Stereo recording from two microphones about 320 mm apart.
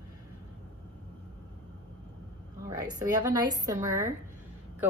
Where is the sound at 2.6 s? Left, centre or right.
Centre.